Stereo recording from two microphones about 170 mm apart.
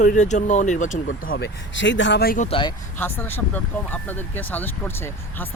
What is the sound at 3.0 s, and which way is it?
Speech, 10° left (ahead or behind).